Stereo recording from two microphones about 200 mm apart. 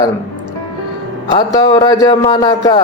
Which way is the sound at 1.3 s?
20° left (ahead or behind).